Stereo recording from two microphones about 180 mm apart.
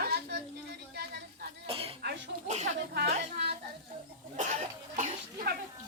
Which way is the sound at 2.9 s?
60° right (ahead or behind).